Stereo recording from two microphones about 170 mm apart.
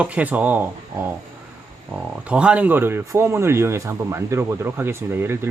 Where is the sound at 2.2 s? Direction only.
5° right (ahead or behind).